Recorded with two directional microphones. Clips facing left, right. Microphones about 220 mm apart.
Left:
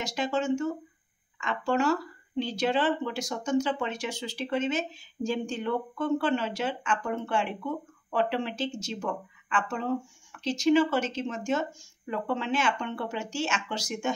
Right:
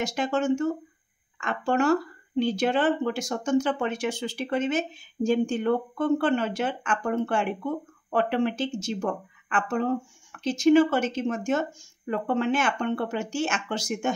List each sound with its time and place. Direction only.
0.0 s speech: 50° right (ahead or behind)